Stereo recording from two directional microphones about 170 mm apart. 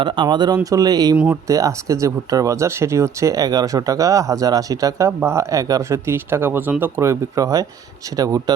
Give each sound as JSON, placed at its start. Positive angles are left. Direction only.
{"t": 0.0, "sound": "speech", "side_deg": -30}
{"t": 1.1, "sound": "speech", "side_deg": -5}
{"t": 1.5, "sound": "speech", "side_deg": -20}